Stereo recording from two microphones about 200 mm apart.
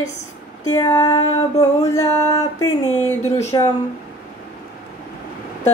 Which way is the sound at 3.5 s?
20° left (ahead or behind).